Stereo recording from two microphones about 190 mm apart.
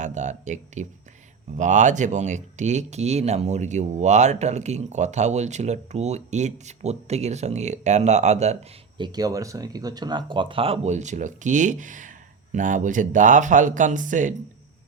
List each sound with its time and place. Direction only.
0.0 s speech: 40° right (ahead or behind)
9.0 s speech: 20° right (ahead or behind); by 14.3 s 45° right (ahead or behind)